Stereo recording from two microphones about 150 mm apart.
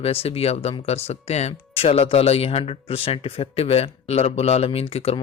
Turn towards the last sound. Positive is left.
turn(degrees=40)  # may be behind; listen again after turning